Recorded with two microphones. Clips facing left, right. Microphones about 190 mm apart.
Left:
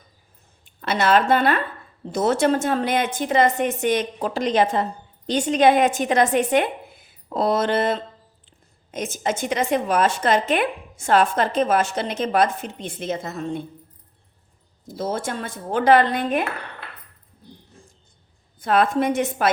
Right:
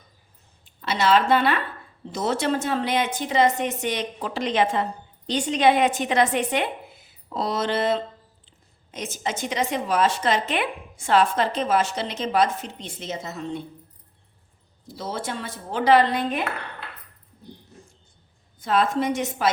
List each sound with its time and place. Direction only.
0.6 s a woman's voice: 55° left (ahead or behind)
14.8 s a woman's voice: 45° left (ahead or behind)
18.6 s a woman's voice: 55° left (ahead or behind)